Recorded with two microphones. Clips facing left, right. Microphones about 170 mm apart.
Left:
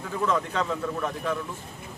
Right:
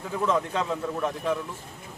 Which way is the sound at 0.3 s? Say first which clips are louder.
Right 1 dB; 25° right (ahead or behind).